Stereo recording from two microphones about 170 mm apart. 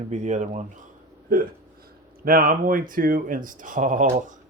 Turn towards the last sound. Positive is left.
turn(degrees=-50)  # may be behind; listen again after turning